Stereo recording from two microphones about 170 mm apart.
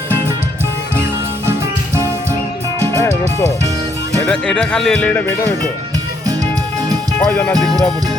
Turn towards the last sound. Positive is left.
turn(degrees=15)  # may be behind; listen again after turning